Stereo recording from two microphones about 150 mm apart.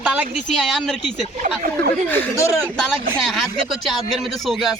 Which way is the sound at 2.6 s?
5° left (ahead or behind).